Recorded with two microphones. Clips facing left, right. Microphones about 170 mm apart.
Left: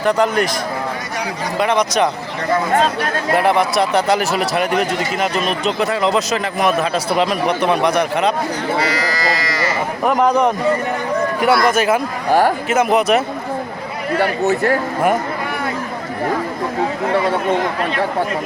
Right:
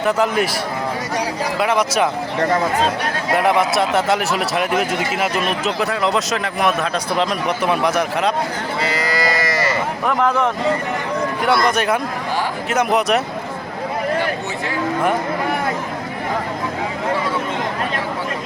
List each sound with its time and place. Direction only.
0.0 s speech: 5° right (ahead or behind)
1.5 s speech: 5° right (ahead or behind)
3.3 s speech: centre (ahead or behind)
10.1 s a man's voice: 20° left (ahead or behind)
11.4 s speech: 5° left (ahead or behind)
12.3 s speech: 45° left (ahead or behind)
12.6 s speech: centre (ahead or behind)
14.2 s speech: 50° left (ahead or behind)